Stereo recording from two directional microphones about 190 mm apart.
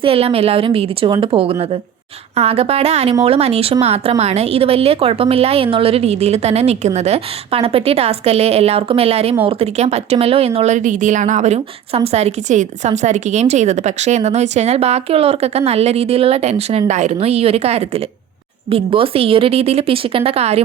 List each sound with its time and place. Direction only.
0.0 s a woman's voice: 30° right (ahead or behind)